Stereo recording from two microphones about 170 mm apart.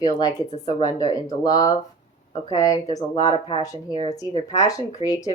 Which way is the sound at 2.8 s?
40° left (ahead or behind).